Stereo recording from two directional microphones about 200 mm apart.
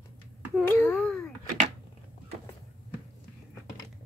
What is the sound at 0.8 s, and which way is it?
Wail, 5° left (ahead or behind).